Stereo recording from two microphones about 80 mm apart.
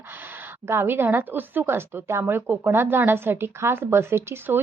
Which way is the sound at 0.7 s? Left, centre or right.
Right.